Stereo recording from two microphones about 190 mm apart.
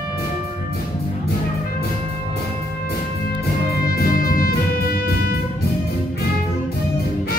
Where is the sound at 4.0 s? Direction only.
50° left (ahead or behind).